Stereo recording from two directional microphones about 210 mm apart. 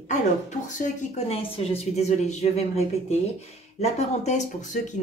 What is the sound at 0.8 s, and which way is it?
Speech, 35° left (ahead or behind).